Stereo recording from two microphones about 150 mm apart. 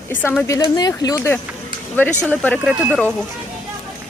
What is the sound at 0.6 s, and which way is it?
Speech, 25° left (ahead or behind).